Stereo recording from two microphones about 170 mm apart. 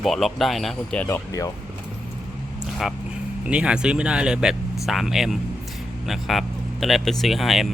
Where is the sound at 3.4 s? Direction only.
5° right (ahead or behind).